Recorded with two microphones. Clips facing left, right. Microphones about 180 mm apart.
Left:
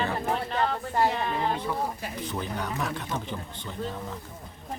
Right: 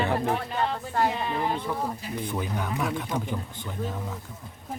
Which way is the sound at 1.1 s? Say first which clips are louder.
Left 1 dB; 5° right (ahead or behind).